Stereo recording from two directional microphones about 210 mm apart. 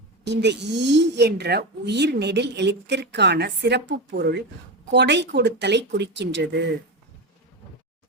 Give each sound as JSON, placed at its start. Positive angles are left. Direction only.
{"t": 0.3, "sound": "speech", "side_deg": -55}